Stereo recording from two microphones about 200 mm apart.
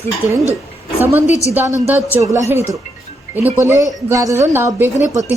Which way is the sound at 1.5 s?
15° right (ahead or behind).